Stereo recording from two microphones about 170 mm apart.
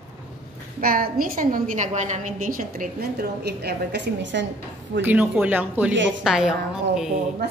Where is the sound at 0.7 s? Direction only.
60° right (ahead or behind); by 4.5 s 90° right.